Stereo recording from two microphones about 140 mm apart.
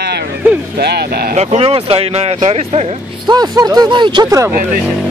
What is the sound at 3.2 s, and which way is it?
Speech, 30° right (ahead or behind).